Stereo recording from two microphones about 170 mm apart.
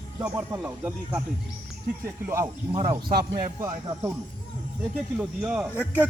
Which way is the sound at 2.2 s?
15° right (ahead or behind).